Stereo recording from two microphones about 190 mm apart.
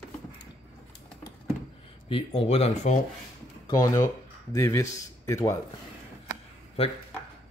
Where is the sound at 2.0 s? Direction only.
30° left (ahead or behind).